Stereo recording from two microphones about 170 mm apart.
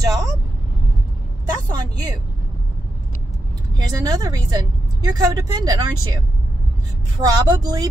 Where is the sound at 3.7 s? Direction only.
20° right (ahead or behind).